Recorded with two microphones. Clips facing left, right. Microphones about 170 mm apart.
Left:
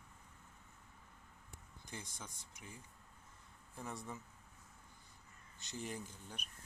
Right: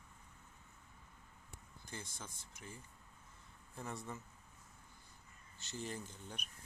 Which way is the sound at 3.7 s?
10° left (ahead or behind).